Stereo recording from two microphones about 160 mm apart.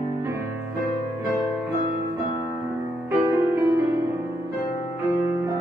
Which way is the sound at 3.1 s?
15° right (ahead or behind).